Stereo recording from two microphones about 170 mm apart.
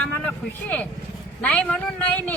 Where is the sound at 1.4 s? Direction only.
10° left (ahead or behind).